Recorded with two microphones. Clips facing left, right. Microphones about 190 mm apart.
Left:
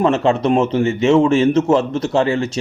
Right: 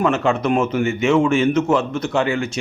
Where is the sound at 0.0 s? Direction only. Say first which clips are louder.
Left 3 dB; 30° left (ahead or behind).